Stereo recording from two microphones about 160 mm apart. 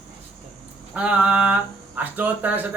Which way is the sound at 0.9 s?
5° right (ahead or behind).